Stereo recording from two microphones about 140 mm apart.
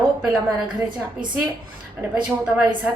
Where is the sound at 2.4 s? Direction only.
5° right (ahead or behind).